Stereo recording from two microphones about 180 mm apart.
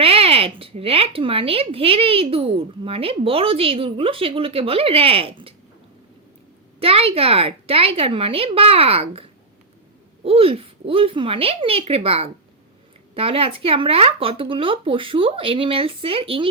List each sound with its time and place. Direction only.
0.0 s a woman's voice: 35° right (ahead or behind)
6.7 s a woman's voice: 30° right (ahead or behind)
10.2 s a woman's voice: 30° right (ahead or behind)